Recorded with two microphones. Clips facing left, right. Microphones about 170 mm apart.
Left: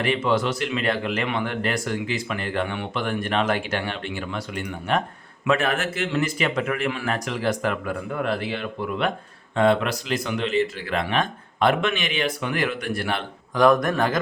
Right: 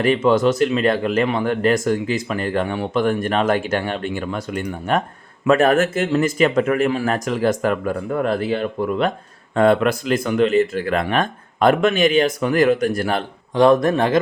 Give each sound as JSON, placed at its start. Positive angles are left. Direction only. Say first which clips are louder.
{"t": 0.0, "sound": "speech", "louder": "right 7 dB", "side_deg": -40}
{"t": 13.5, "sound": "a man's voice", "louder": "right 4 dB", "side_deg": -25}